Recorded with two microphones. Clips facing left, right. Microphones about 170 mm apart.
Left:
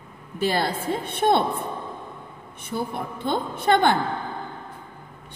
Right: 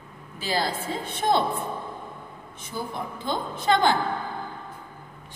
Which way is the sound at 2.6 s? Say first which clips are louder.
Left 4 dB; 60° left (ahead or behind).